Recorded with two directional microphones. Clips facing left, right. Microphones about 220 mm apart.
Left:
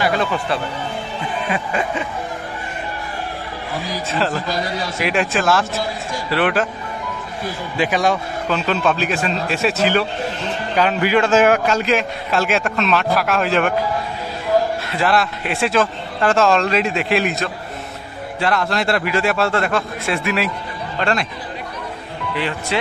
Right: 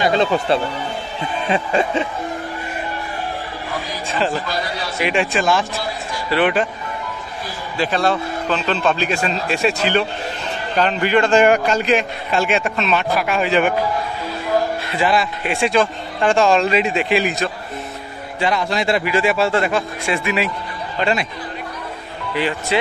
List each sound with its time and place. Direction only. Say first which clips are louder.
0.0 s a sound: right 3 dB; 25° right (ahead or behind)
4.1 s a man's voice: right 1 dB; centre (ahead or behind)
7.7 s a man's voice: even; 15° left (ahead or behind); by 13.7 s centre (ahead or behind)
14.9 s a man's voice: even; centre (ahead or behind)
22.3 s a man's voice: right 3 dB; 5° right (ahead or behind)